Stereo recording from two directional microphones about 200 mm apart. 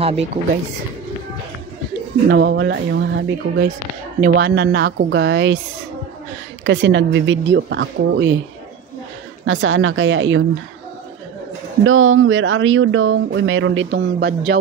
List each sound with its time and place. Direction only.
0.0 s speech: 30° right (ahead or behind)
2.2 s speech: 60° right (ahead or behind)
6.6 s speech: 65° right (ahead or behind)
9.5 s speech: 75° right (ahead or behind)
11.8 s speech: 90° right; by 14.6 s 60° right (ahead or behind)